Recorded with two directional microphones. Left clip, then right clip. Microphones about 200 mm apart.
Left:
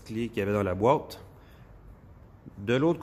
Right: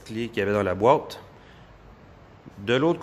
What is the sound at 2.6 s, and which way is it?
Speech, 15° left (ahead or behind).